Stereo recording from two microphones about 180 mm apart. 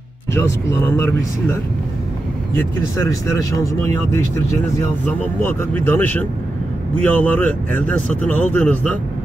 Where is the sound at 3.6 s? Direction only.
15° left (ahead or behind).